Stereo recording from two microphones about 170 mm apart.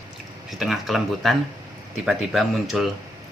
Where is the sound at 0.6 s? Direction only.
Centre (ahead or behind).